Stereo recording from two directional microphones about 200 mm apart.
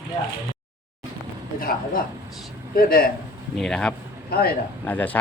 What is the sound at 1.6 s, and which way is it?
Speech, 45° left (ahead or behind).